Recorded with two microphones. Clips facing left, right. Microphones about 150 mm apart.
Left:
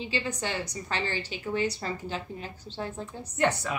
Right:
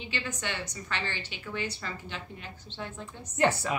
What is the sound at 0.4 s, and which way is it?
A woman's voice, 35° left (ahead or behind).